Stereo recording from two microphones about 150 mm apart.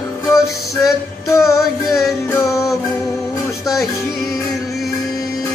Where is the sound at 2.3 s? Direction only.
20° left (ahead or behind).